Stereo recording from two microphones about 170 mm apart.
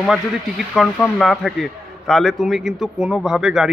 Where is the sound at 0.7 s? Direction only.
10° left (ahead or behind).